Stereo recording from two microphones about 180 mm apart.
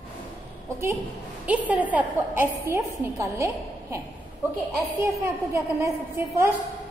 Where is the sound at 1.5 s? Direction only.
10° right (ahead or behind).